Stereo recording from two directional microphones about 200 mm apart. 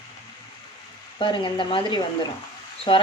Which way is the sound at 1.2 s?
25° left (ahead or behind).